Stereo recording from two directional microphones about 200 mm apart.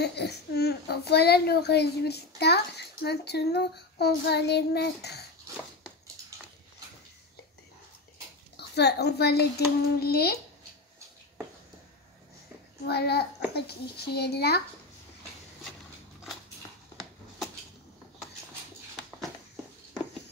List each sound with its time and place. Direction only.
0.0 s a child's voice: 55° left (ahead or behind)
5.5 s a sound: 15° right (ahead or behind)
8.5 s a woman's voice: 55° left (ahead or behind)
12.8 s a child's voice: 55° left (ahead or behind)